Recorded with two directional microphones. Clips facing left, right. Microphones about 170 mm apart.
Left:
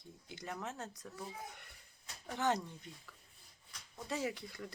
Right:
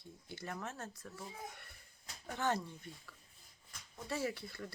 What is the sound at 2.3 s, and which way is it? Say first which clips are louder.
Speech: left 1 dB; 15° left (ahead or behind).